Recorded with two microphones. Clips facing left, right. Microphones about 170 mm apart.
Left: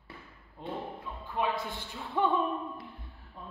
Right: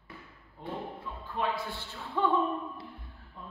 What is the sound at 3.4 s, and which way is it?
Music, 10° left (ahead or behind).